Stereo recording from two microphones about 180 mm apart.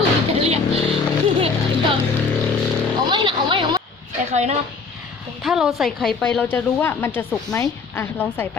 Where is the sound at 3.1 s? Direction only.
25° right (ahead or behind).